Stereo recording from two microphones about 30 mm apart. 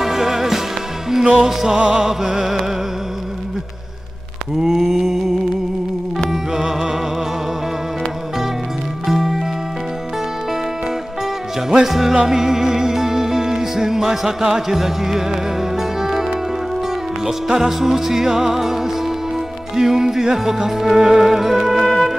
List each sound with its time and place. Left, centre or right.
0.0 s music: centre
4.6 s mantra: centre
6.3 s music: centre
9.0 s music: centre
11.7 s music: centre
21.7 s music: centre